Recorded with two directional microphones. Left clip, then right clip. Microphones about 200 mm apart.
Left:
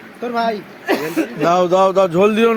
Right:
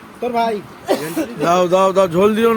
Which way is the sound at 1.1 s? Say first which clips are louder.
Left 1 dB; centre (ahead or behind).